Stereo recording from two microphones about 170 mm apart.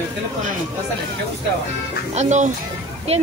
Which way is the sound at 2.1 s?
45° right (ahead or behind).